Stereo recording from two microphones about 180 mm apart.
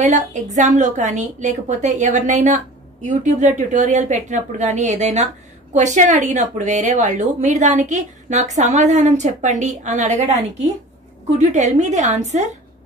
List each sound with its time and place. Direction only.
0.0 s a woman's voice: 40° right (ahead or behind)